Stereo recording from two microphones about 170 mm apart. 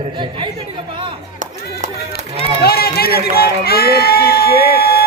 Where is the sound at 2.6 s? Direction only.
65° left (ahead or behind).